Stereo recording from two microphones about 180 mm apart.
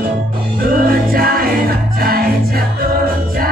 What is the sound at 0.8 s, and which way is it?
Music, 55° right (ahead or behind).